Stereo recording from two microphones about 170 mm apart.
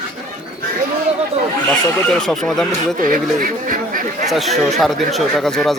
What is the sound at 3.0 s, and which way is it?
Speech, 55° right (ahead or behind).